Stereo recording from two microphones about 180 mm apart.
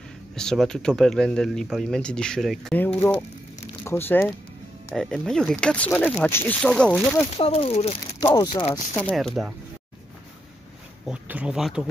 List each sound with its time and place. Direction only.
0.4 s speech: 5° left (ahead or behind)
4.9 s speech: 5° left (ahead or behind)
7.3 s speech: 35° left (ahead or behind)
8.9 s speech: 5° left (ahead or behind)
11.1 s speech: 5° right (ahead or behind)